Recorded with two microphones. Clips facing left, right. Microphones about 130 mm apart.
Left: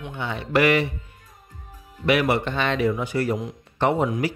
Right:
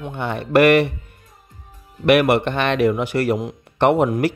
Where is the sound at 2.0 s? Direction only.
65° right (ahead or behind).